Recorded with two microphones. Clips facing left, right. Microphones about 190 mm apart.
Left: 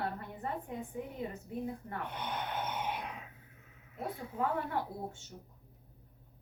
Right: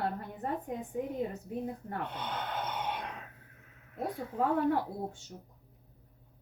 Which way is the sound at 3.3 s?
65° right (ahead or behind).